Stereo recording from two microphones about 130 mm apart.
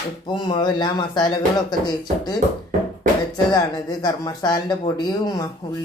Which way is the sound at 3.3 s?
30° left (ahead or behind).